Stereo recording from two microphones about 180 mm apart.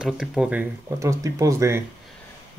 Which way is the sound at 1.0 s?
15° right (ahead or behind).